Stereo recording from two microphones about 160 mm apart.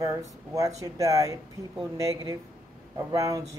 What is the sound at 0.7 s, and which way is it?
Speech, 20° right (ahead or behind).